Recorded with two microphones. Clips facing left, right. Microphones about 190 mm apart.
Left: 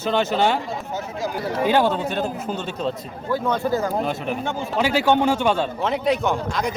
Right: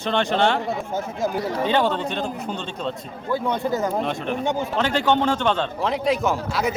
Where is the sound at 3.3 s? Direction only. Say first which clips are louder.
Left 1 dB; 20° right (ahead or behind).